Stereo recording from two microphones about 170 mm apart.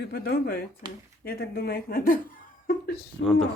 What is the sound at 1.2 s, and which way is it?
Speech, 65° left (ahead or behind).